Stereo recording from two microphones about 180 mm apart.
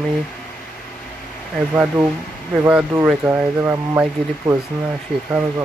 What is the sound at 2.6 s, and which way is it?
Speech, 5° right (ahead or behind).